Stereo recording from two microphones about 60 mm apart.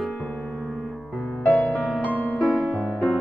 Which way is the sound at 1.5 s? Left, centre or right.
Centre.